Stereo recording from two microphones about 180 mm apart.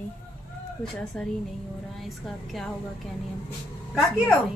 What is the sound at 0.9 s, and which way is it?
Speech, 5° left (ahead or behind).